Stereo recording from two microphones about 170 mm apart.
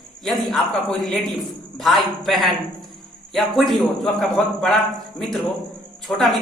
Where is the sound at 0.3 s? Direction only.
Centre (ahead or behind).